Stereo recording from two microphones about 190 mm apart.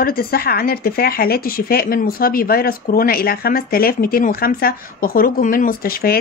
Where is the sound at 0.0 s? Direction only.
55° left (ahead or behind).